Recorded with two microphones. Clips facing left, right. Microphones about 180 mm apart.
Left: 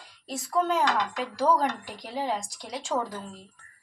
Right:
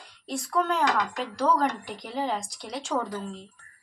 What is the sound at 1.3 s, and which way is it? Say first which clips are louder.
Speech: even; centre (ahead or behind).